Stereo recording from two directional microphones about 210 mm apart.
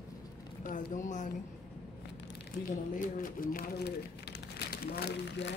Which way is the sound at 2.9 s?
40° left (ahead or behind).